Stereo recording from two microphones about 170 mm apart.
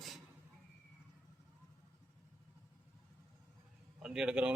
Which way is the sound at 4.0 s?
5° right (ahead or behind).